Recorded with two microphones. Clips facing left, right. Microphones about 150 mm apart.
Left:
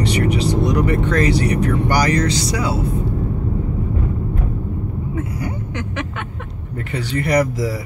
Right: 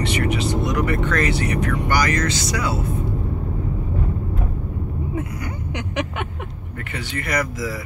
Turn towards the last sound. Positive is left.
turn(degrees=35)  # may be behind; listen again after turning